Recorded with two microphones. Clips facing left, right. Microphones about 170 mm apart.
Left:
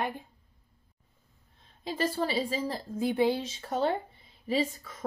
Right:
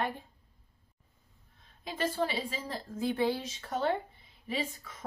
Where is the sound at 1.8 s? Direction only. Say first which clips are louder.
Left 2 dB; 35° left (ahead or behind).